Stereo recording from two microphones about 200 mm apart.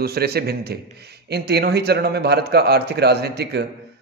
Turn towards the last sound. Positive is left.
turn(degrees=-55)  # may be behind; listen again after turning